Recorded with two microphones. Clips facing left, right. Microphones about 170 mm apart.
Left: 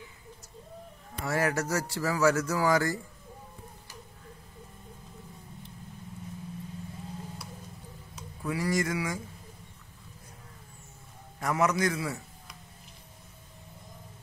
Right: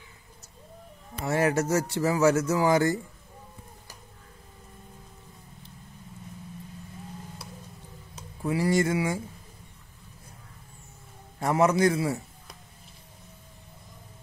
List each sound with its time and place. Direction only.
1.2 s speech: 20° right (ahead or behind)
8.4 s speech: 30° right (ahead or behind)
11.3 s a man's voice: 30° right (ahead or behind)